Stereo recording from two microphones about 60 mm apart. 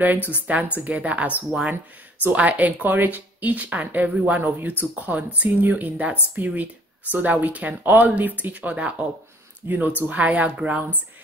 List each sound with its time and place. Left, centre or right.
0.0 s speech: right